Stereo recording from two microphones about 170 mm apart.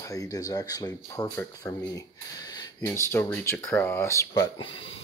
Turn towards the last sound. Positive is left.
turn(degrees=35)  # may be behind; listen again after turning